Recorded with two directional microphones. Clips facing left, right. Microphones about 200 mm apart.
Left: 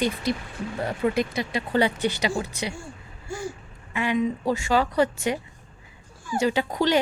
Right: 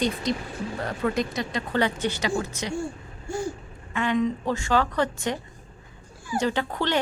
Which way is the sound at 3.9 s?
10° left (ahead or behind).